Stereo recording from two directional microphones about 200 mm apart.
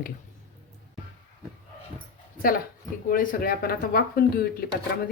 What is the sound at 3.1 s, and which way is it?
Speech, 45° left (ahead or behind).